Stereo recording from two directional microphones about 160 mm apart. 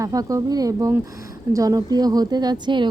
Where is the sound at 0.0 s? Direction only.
20° right (ahead or behind).